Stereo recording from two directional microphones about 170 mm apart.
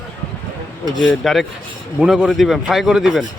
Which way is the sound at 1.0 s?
Centre (ahead or behind).